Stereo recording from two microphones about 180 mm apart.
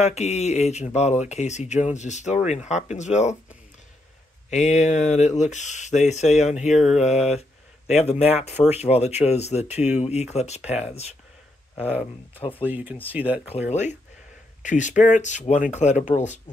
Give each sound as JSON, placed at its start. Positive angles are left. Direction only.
{"t": 0.0, "sound": "speech", "side_deg": 40}
{"t": 4.5, "sound": "speech", "side_deg": 40}
{"t": 11.7, "sound": "speech", "side_deg": -5}
{"t": 13.5, "sound": "speech", "side_deg": 40}